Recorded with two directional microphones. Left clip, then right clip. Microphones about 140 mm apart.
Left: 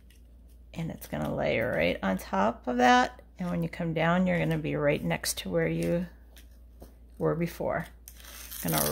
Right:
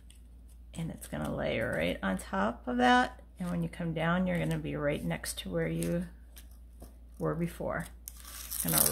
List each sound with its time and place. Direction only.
0.7 s speech: 35° left (ahead or behind)
7.2 s speech: 40° left (ahead or behind)